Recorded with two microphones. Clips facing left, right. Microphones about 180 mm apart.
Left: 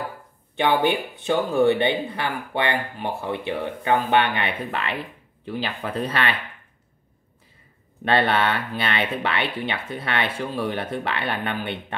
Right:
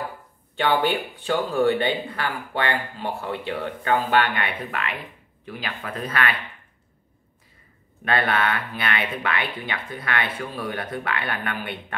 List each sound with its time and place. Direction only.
0.6 s speech: 15° left (ahead or behind)
8.0 s speech: 30° left (ahead or behind)